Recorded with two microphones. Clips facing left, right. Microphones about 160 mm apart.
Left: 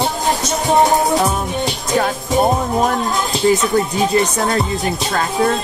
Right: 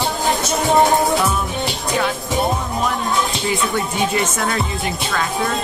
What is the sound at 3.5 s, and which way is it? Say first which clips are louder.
Speech: left 5 dB; 40° left (ahead or behind).